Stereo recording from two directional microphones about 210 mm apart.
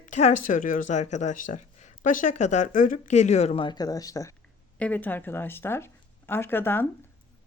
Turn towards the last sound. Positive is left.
turn(degrees=10)  # may be behind; listen again after turning